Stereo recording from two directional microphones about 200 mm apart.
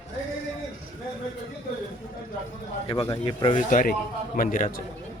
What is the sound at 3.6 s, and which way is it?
A man's voice, 40° left (ahead or behind).